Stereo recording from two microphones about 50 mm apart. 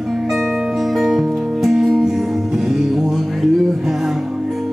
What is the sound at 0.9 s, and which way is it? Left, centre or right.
Music, centre.